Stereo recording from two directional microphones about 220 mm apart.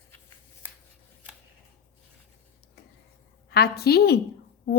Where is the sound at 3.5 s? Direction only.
45° left (ahead or behind).